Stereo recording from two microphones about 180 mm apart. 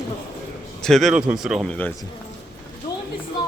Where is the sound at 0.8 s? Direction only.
Centre (ahead or behind).